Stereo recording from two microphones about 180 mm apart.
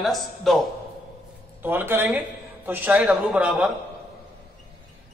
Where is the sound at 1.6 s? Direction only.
10° right (ahead or behind).